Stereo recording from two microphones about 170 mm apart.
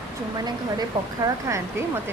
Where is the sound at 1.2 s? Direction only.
20° right (ahead or behind).